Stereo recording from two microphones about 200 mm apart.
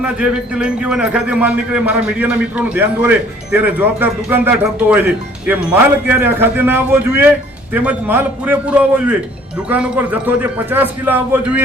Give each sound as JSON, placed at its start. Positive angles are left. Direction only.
{"t": 0.0, "sound": "speech", "side_deg": -5}